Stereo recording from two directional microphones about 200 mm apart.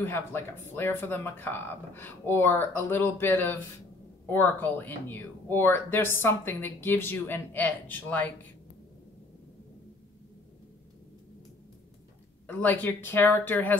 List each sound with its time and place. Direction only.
0.0 s speech: 10° left (ahead or behind)
12.4 s speech: 10° left (ahead or behind)